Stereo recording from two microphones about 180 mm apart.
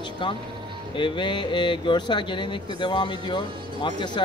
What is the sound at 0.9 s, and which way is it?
Speech, 25° left (ahead or behind).